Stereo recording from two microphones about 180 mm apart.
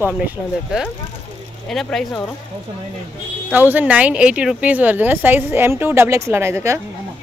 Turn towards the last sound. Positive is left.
turn(degrees=-15)  # may be behind; listen again after turning